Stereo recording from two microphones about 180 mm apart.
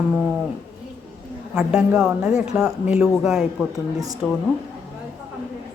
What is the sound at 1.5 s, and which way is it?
Speech, 5° right (ahead or behind).